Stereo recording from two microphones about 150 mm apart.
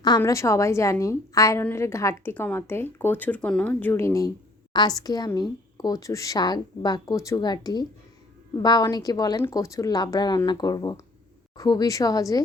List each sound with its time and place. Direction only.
0.2 s speech: 20° left (ahead or behind)